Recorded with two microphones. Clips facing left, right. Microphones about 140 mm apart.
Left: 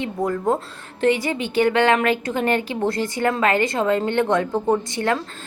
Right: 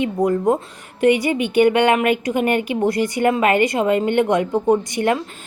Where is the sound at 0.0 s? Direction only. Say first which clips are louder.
Right 5 dB; 20° right (ahead or behind).